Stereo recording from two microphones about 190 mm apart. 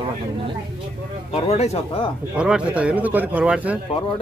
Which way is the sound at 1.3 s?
30° left (ahead or behind).